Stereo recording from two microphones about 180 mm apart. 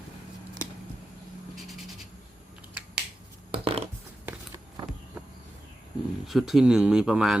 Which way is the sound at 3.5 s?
35° right (ahead or behind).